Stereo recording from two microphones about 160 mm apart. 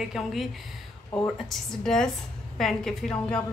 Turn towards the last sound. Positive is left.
turn(degrees=5)  # may be behind; listen again after turning